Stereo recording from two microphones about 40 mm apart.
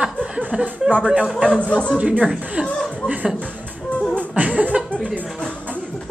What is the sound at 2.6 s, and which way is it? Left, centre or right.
Speech, right.